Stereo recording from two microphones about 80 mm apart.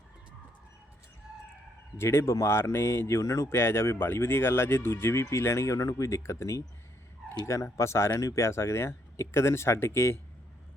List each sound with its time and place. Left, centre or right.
2.0 s speech: left